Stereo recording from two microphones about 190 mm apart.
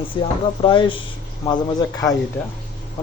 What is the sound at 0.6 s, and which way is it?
Speech, 25° left (ahead or behind).